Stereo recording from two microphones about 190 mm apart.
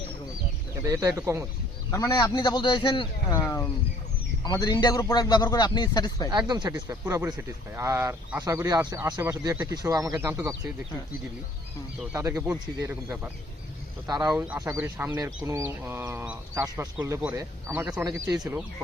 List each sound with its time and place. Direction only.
0.9 s speech: 15° right (ahead or behind)
1.9 s a man's voice: 20° left (ahead or behind)
6.3 s speech: 20° right (ahead or behind)
12.1 s speech: 15° right (ahead or behind)